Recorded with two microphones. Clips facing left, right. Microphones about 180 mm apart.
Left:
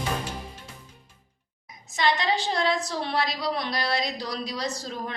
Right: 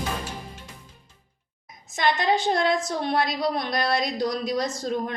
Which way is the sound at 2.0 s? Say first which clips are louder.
Right 2 dB; 50° right (ahead or behind).